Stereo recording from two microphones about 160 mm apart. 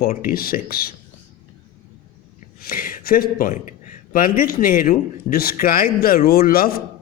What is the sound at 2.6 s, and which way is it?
Speech, 65° left (ahead or behind).